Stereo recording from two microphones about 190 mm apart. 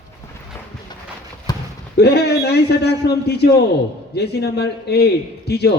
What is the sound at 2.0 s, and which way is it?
A man's voice, 60° left (ahead or behind).